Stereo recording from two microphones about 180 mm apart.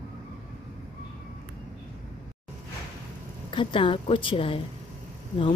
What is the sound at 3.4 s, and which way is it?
Speech, 30° left (ahead or behind).